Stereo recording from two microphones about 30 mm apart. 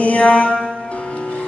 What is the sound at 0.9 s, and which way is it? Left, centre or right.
Music, left.